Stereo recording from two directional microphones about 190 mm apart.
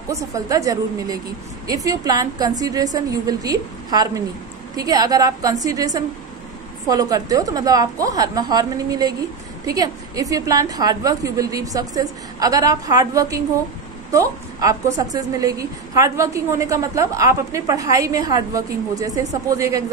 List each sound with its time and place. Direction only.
0.1 s a woman's voice: 15° right (ahead or behind)